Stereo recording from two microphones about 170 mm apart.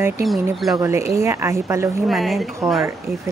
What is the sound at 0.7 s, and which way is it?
Speech, 15° right (ahead or behind).